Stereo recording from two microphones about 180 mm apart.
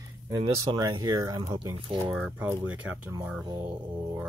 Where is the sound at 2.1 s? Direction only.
5° right (ahead or behind).